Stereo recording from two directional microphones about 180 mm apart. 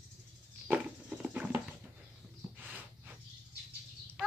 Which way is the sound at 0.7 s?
5° right (ahead or behind).